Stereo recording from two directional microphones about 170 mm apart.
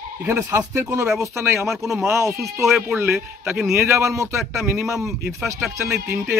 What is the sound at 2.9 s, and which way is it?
A man's voice, 15° right (ahead or behind).